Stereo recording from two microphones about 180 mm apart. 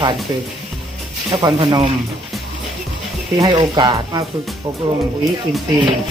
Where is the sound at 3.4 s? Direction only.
25° right (ahead or behind).